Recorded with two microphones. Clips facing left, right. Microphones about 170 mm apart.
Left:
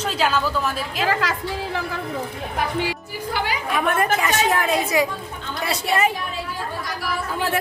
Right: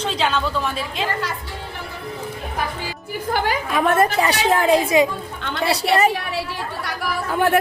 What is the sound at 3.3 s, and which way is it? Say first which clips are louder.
A woman's voice: right 3 dB; 45° right (ahead or behind).